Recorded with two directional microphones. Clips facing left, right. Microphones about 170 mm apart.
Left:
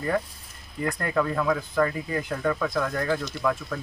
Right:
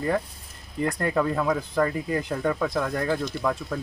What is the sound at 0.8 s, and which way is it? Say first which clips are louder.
Speech: right 2 dB; 35° right (ahead or behind).